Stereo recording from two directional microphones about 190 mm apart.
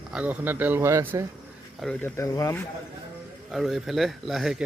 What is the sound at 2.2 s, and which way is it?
Speech, 15° left (ahead or behind).